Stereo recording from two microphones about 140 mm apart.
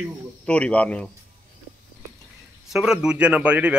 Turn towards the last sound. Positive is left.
turn(degrees=-10)  # may be behind; listen again after turning